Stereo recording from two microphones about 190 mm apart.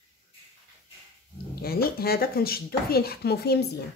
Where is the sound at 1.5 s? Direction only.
55° left (ahead or behind).